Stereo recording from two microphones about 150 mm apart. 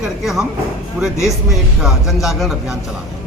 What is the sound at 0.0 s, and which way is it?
A man's voice, centre (ahead or behind).